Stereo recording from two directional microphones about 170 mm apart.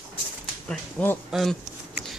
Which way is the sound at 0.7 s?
5° left (ahead or behind).